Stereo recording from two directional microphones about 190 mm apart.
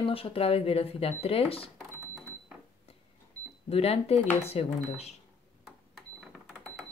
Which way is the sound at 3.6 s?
30° left (ahead or behind).